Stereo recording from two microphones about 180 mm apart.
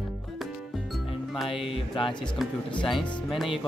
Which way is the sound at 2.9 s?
Centre (ahead or behind).